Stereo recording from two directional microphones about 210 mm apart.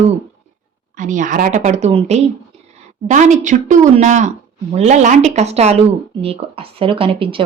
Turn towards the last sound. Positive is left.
turn(degrees=-25)  # may be behind; listen again after turning